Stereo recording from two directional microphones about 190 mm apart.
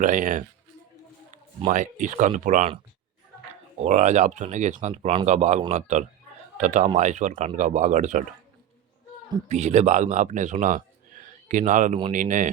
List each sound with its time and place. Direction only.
0.0 s speech: 45° right (ahead or behind)
3.8 s a man's voice: 40° right (ahead or behind)
9.5 s a man's voice: 35° right (ahead or behind)